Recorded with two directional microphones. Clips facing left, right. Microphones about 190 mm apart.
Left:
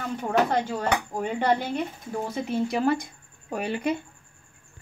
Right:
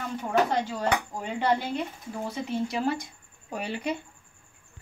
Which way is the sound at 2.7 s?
55° left (ahead or behind).